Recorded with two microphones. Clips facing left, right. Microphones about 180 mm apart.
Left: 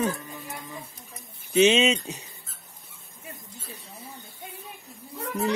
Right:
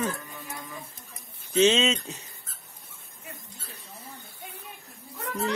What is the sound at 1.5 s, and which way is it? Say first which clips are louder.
Speech: left 2 dB; 15° left (ahead or behind).